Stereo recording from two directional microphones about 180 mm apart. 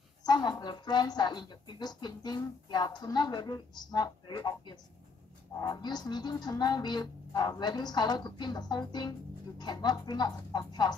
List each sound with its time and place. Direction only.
0.2 s a woman's voice: 25° left (ahead or behind)